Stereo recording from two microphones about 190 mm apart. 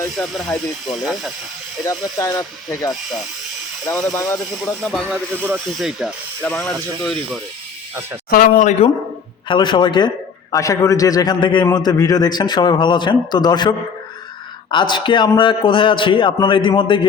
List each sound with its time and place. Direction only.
0.2 s speech: 5° left (ahead or behind)
1.8 s speech: 15° left (ahead or behind)
2.9 s speech: centre (ahead or behind)
4.1 s speech: 15° left (ahead or behind)
4.6 s speech: centre (ahead or behind)
8.3 s speech: 45° left (ahead or behind)
9.5 s a man's voice: 25° left (ahead or behind)